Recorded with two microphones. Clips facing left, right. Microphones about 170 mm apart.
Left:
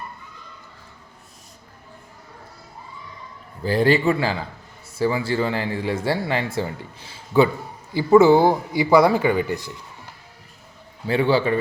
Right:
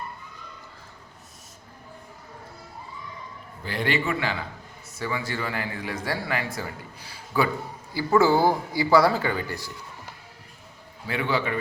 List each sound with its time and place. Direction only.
3.6 s speech: 35° left (ahead or behind); by 9.7 s 20° left (ahead or behind)
11.0 s speech: 30° left (ahead or behind)